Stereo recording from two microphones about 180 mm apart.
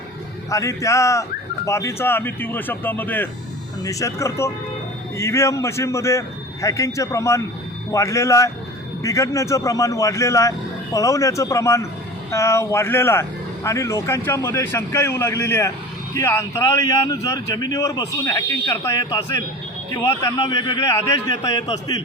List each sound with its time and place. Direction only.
0.5 s a man's voice: 15° left (ahead or behind)